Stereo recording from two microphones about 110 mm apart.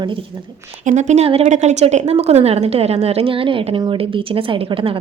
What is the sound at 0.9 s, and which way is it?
A woman's voice, 90° right.